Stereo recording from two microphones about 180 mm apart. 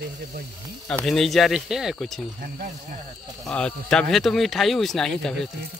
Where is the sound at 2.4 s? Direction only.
50° right (ahead or behind).